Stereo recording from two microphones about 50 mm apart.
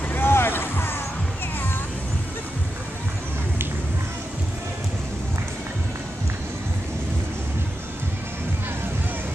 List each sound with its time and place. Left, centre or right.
0.1 s boat: left